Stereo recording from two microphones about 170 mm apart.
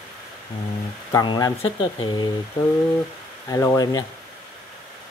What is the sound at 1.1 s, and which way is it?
Speech, 25° left (ahead or behind).